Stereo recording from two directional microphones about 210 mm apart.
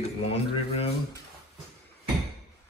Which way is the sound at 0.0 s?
30° left (ahead or behind).